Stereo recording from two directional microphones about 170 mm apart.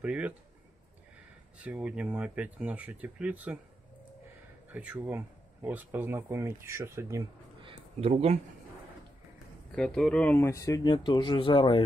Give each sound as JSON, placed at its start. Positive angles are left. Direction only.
{"t": 0.0, "sound": "speech", "side_deg": -10}
{"t": 1.6, "sound": "speech", "side_deg": -5}
{"t": 4.7, "sound": "speech", "side_deg": -10}
{"t": 7.6, "sound": "a sound", "side_deg": -35}
{"t": 9.7, "sound": "speech", "side_deg": 5}